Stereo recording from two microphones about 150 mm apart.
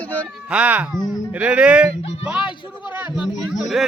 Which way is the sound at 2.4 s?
30° left (ahead or behind).